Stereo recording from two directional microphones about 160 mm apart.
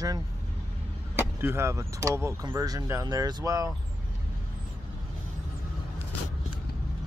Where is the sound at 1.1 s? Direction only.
15° right (ahead or behind).